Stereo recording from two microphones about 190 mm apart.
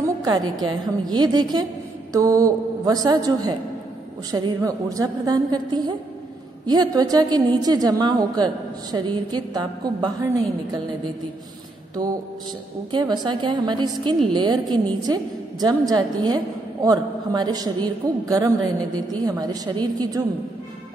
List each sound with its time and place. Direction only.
0.0 s a woman's voice: 20° right (ahead or behind)
12.0 s a woman's voice: 20° right (ahead or behind)